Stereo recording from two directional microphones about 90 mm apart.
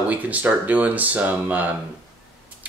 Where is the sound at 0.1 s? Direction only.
15° right (ahead or behind).